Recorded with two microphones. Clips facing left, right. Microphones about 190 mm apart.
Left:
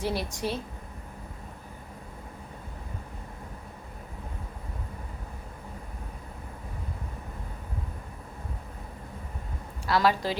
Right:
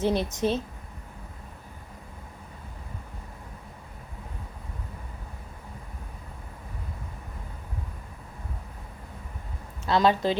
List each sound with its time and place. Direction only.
0.0 s speech: 20° right (ahead or behind)
9.8 s a woman's voice: 20° right (ahead or behind)